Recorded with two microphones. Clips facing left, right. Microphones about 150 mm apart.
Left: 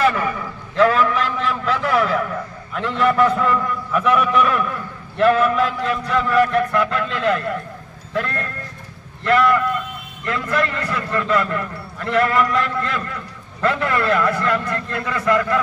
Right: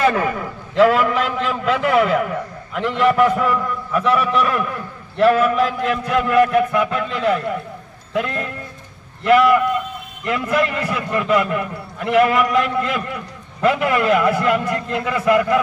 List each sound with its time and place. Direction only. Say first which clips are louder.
0.7 s a man's voice: right 2 dB; 15° right (ahead or behind)